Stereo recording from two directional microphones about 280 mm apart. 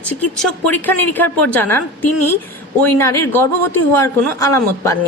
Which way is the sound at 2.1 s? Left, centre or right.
Left.